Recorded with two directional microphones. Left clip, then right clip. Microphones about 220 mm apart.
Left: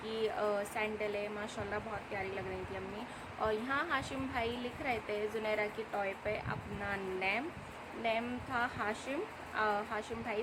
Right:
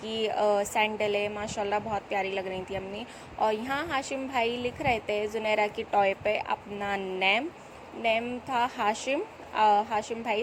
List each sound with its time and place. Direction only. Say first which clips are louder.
0.2 s a woman's voice: right 9 dB; 25° right (ahead or behind)
3.4 s a woman's voice: right 7 dB; 25° right (ahead or behind)